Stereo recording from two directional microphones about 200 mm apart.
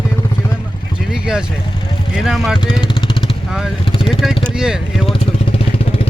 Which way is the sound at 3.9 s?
25° left (ahead or behind).